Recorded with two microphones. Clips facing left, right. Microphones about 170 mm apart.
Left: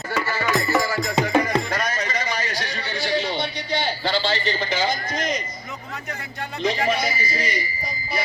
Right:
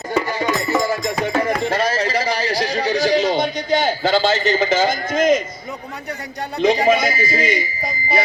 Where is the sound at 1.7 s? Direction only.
30° right (ahead or behind); by 5.4 s 50° right (ahead or behind).